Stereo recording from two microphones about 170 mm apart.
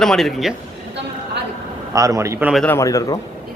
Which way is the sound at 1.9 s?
20° right (ahead or behind).